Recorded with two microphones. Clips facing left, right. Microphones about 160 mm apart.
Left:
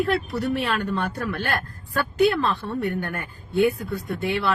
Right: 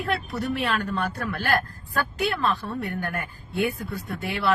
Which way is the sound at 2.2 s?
30° left (ahead or behind).